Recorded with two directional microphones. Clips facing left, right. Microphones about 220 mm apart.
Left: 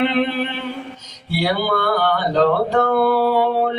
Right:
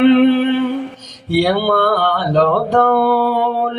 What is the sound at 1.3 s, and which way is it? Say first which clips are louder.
Music: right 6 dB; 50° right (ahead or behind).